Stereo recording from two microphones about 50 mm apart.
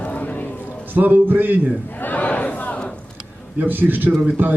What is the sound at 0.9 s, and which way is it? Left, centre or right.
Speech, right.